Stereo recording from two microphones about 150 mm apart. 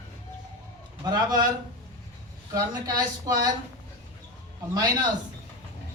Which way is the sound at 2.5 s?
25° right (ahead or behind).